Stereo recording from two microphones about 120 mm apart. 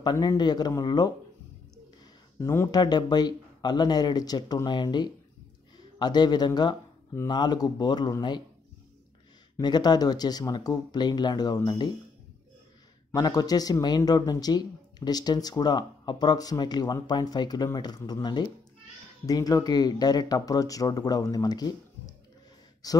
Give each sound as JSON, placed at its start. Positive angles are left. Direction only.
{"t": 0.0, "sound": "speech", "side_deg": 35}
{"t": 2.3, "sound": "speech", "side_deg": 25}
{"t": 2.7, "sound": "speech", "side_deg": 35}
{"t": 9.6, "sound": "speech", "side_deg": 35}
{"t": 13.1, "sound": "speech", "side_deg": 35}